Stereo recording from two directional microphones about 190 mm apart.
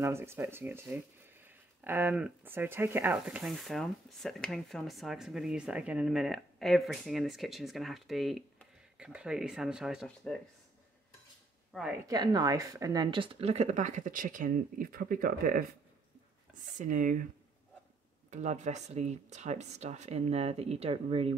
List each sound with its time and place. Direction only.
0.0 s speech: 15° right (ahead or behind)
11.7 s speech: centre (ahead or behind)
12.1 s speech: 20° right (ahead or behind); by 15.6 s 45° right (ahead or behind)
16.7 s speech: 45° right (ahead or behind)
18.3 s speech: 40° right (ahead or behind)